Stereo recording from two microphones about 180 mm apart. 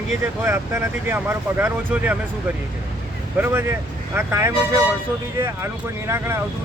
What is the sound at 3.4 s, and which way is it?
Speech, 10° right (ahead or behind).